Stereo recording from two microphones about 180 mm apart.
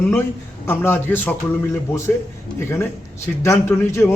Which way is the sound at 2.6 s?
15° left (ahead or behind).